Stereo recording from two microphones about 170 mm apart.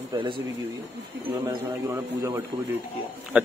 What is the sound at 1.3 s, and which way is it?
A man's voice, 20° right (ahead or behind).